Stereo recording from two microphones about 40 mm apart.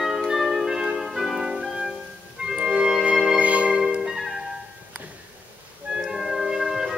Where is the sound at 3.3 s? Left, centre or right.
Right.